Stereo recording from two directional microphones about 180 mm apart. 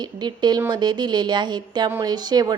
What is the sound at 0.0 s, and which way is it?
A woman's voice, 25° right (ahead or behind).